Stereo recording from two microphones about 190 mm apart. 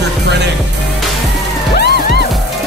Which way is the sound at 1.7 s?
55° left (ahead or behind).